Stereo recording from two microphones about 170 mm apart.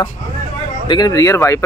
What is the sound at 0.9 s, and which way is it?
Speech, 25° left (ahead or behind).